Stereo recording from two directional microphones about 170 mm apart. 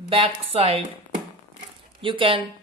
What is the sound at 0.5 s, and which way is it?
Speech, 35° right (ahead or behind).